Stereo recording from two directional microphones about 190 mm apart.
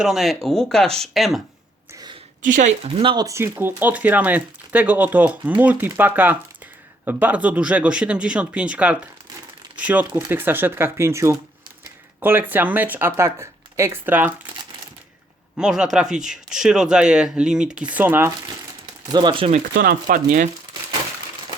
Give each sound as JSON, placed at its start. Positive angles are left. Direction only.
{"t": 0.0, "sound": "speech", "side_deg": 0}
{"t": 2.4, "sound": "speech", "side_deg": -40}
{"t": 3.0, "sound": "speech", "side_deg": -25}
{"t": 15.5, "sound": "speech", "side_deg": -5}
{"t": 19.0, "sound": "speech", "side_deg": -25}
{"t": 19.7, "sound": "speech", "side_deg": -50}